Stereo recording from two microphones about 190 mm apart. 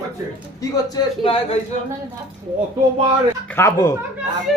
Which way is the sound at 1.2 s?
30° left (ahead or behind).